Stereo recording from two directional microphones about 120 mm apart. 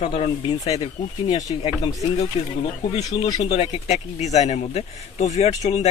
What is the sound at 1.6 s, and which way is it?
Speech, 55° left (ahead or behind).